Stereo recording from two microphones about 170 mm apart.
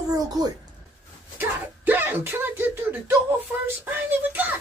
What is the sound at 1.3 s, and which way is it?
Speech, 10° right (ahead or behind).